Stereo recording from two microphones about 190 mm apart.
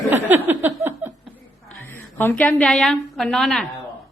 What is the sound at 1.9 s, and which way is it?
A woman's voice, 10° left (ahead or behind).